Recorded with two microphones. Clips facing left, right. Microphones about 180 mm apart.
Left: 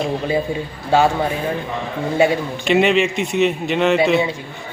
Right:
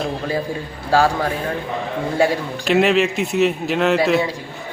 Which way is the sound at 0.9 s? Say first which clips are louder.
Left 1 dB; 20° left (ahead or behind).